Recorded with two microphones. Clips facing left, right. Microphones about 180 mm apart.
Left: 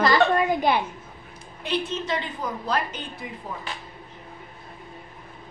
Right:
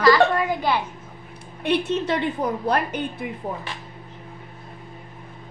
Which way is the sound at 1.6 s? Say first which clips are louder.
Right 6 dB; 60° right (ahead or behind).